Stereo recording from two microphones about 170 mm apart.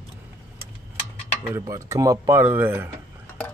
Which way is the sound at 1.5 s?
20° right (ahead or behind).